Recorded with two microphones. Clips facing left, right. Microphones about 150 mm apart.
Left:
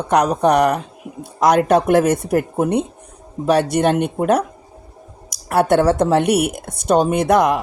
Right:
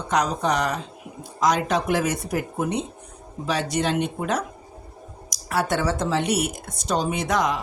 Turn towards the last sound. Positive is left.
turn(degrees=60)  # may be behind; listen again after turning